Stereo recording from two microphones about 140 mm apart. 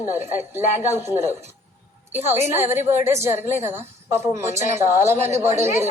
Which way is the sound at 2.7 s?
15° right (ahead or behind).